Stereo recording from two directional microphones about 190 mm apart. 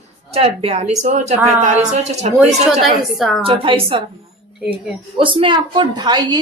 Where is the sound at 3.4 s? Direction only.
25° right (ahead or behind).